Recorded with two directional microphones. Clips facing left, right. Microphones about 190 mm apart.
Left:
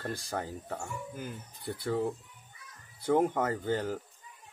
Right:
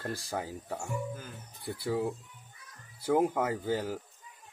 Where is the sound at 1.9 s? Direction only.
5° right (ahead or behind).